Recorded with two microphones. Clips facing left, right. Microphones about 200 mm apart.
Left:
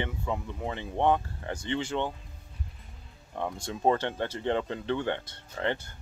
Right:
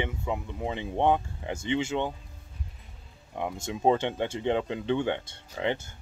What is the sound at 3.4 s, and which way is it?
Speech, 15° right (ahead or behind).